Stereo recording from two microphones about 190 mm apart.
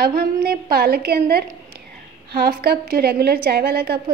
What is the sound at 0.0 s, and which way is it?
A woman's voice, 50° right (ahead or behind).